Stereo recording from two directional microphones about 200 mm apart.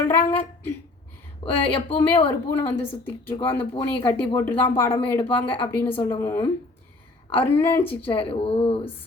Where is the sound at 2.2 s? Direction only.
10° left (ahead or behind).